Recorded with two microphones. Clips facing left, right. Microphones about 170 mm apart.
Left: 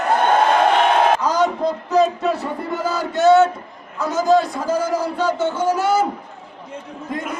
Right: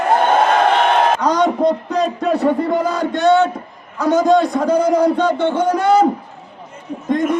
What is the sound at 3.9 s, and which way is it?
A man's voice, centre (ahead or behind).